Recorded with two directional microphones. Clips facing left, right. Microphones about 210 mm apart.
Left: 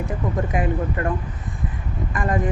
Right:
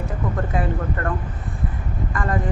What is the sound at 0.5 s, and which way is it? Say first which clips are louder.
Speech: left 1 dB; 15° left (ahead or behind).